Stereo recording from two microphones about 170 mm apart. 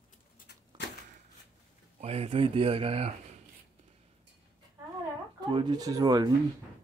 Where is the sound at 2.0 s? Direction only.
35° right (ahead or behind).